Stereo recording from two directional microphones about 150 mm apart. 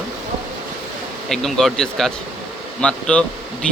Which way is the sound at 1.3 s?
Centre (ahead or behind).